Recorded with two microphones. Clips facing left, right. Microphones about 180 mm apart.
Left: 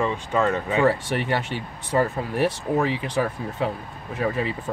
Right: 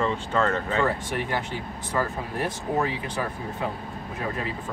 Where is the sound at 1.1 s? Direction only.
75° left (ahead or behind).